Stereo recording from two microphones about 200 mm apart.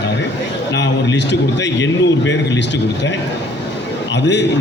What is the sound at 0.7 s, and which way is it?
A man's voice, 65° left (ahead or behind).